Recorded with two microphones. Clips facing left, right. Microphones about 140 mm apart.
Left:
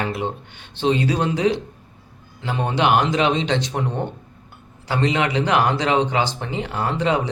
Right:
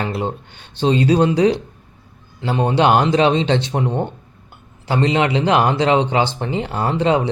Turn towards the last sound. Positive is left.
turn(degrees=-30)  # may be behind; listen again after turning